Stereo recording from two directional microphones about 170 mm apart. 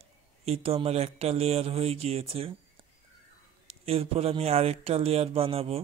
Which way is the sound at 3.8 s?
35° right (ahead or behind).